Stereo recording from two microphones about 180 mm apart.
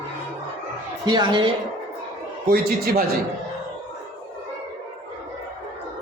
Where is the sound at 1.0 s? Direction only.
25° right (ahead or behind).